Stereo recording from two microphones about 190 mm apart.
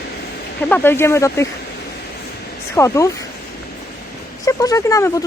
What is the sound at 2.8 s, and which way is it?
Speech, 15° left (ahead or behind).